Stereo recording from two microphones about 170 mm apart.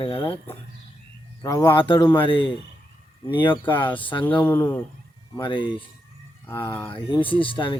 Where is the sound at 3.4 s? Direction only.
30° left (ahead or behind).